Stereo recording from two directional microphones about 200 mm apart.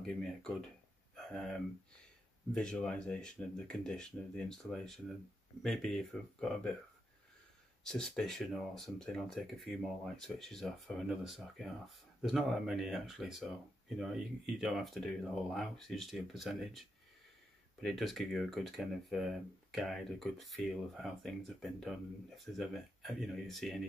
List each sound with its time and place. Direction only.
0.0 s speech: centre (ahead or behind)
1.1 s a sound: 5° left (ahead or behind)
2.5 s speech: 5° left (ahead or behind)
7.8 s speech: centre (ahead or behind)